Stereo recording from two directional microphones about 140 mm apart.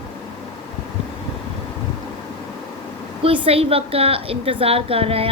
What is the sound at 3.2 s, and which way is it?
Speech, 40° right (ahead or behind).